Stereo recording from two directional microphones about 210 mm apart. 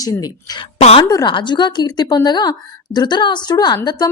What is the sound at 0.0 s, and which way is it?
A woman's voice, 15° left (ahead or behind).